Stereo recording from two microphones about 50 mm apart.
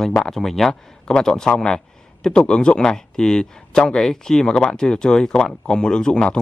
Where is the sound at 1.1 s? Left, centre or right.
Centre.